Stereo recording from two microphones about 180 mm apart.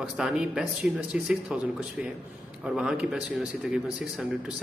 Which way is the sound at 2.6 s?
5° right (ahead or behind).